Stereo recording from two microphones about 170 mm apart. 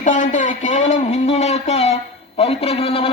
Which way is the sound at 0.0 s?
50° left (ahead or behind).